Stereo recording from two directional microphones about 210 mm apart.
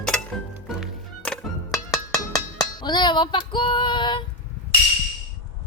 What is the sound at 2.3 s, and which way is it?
Music, 15° left (ahead or behind).